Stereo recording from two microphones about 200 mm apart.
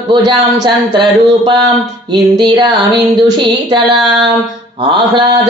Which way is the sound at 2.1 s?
20° right (ahead or behind).